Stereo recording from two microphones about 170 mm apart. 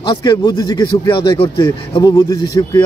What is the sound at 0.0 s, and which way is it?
A man's voice, 25° left (ahead or behind).